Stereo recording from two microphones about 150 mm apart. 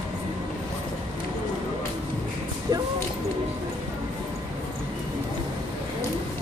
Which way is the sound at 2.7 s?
25° right (ahead or behind).